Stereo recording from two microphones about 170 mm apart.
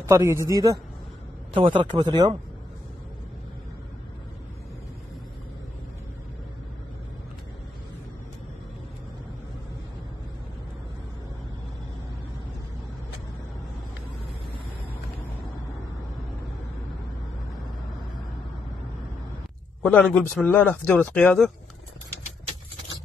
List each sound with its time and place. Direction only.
0.0 s speech: 20° right (ahead or behind)
19.8 s speech: 10° left (ahead or behind)